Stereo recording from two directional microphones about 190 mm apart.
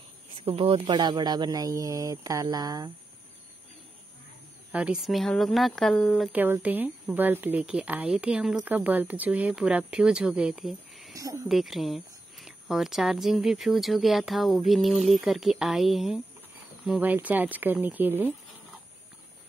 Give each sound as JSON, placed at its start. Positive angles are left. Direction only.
{"t": 0.4, "sound": "speech", "side_deg": -30}
{"t": 4.7, "sound": "speech", "side_deg": -5}
{"t": 11.1, "sound": "speech", "side_deg": -15}
{"t": 11.4, "sound": "speech", "side_deg": 0}